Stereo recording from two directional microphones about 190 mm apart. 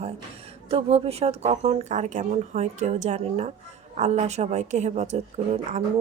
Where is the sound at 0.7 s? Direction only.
30° right (ahead or behind).